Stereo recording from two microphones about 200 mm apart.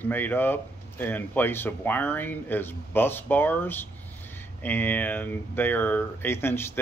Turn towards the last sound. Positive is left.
turn(degrees=10)  # may be behind; listen again after turning